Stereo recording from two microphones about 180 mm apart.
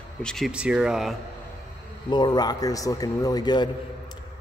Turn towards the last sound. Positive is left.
turn(degrees=25)  # may be behind; listen again after turning